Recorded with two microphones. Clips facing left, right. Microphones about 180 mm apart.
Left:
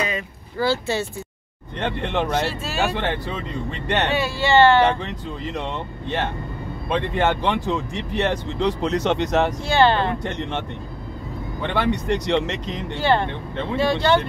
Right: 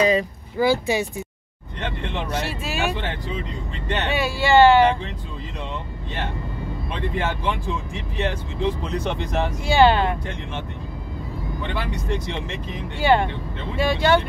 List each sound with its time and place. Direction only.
0.6 s speech: 15° right (ahead or behind)
1.8 s speech: 75° left (ahead or behind)
4.1 s speech: 10° right (ahead or behind)
5.6 s speech: 75° left (ahead or behind)
9.7 s speech: 10° right (ahead or behind)
11.6 s speech: 70° left (ahead or behind); by 12.8 s 85° left
12.9 s speech: 10° right (ahead or behind)